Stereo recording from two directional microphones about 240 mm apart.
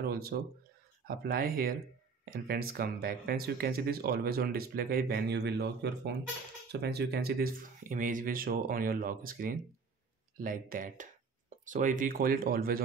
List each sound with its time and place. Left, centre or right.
0.0 s speech: right